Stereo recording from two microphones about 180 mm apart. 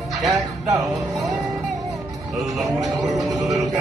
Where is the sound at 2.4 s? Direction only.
Centre (ahead or behind).